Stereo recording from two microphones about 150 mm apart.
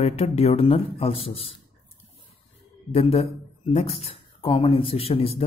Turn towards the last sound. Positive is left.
turn(degrees=40)  # may be behind; listen again after turning